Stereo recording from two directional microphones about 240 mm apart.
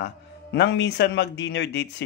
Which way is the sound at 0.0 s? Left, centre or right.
Left.